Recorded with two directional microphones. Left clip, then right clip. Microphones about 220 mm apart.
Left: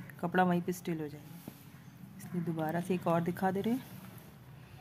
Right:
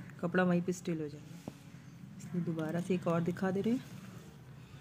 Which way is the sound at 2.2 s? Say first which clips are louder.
Left 2 dB; 25° left (ahead or behind).